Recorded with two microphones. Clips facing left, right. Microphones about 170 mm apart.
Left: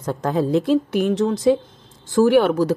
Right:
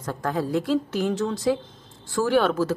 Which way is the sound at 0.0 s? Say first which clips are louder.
Left 6 dB; 20° left (ahead or behind).